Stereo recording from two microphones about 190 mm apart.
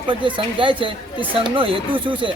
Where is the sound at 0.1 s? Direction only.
25° right (ahead or behind).